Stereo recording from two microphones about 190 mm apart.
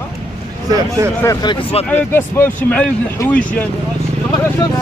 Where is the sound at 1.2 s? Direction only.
20° left (ahead or behind).